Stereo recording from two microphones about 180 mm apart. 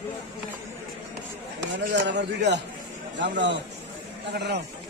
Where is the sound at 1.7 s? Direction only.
75° right (ahead or behind).